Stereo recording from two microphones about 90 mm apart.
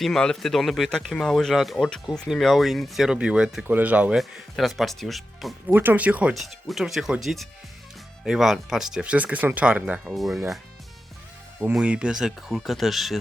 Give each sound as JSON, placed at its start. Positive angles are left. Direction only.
{"t": 0.0, "sound": "speech", "side_deg": 5}
{"t": 4.2, "sound": "speech", "side_deg": 0}
{"t": 5.6, "sound": "speech", "side_deg": -20}
{"t": 6.3, "sound": "speech", "side_deg": 0}
{"t": 10.1, "sound": "speech", "side_deg": 0}
{"t": 11.7, "sound": "speech", "side_deg": -10}